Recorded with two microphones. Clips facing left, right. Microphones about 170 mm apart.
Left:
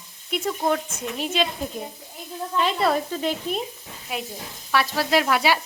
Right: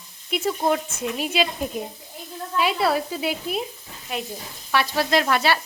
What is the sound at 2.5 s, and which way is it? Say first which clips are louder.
Sizzle: even; 5° right (ahead or behind).